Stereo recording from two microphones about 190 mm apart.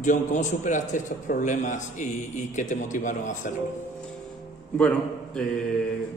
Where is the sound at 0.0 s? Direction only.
40° left (ahead or behind).